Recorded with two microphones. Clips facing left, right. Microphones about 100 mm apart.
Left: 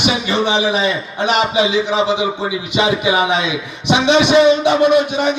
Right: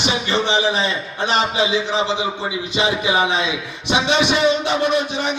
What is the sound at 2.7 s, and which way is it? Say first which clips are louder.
A man's voice: left 3 dB; 20° left (ahead or behind).